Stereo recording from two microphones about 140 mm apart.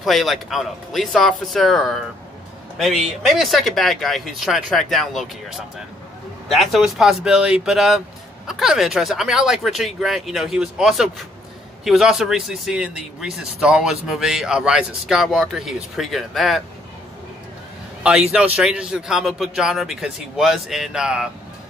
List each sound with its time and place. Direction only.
0.0 s speech: centre (ahead or behind)
18.0 s speech: 10° right (ahead or behind)